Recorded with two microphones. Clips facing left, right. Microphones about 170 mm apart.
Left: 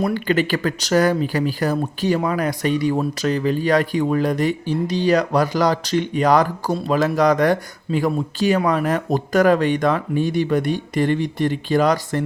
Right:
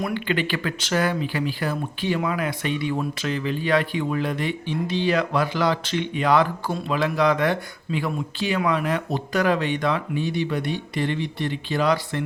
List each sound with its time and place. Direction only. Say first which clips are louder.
0.0 s speech: left 5 dB; 40° left (ahead or behind)